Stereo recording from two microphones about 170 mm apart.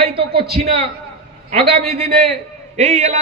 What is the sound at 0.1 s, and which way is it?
Speech, 35° right (ahead or behind).